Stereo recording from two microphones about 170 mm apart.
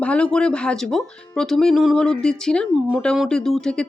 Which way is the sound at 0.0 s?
5° left (ahead or behind).